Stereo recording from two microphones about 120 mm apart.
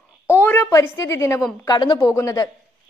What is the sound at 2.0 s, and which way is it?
Speech, 25° left (ahead or behind).